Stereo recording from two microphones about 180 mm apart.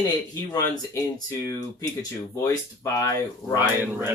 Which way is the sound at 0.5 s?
20° left (ahead or behind).